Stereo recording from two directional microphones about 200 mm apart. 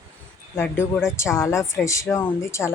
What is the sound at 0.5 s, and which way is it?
Speech, 10° left (ahead or behind).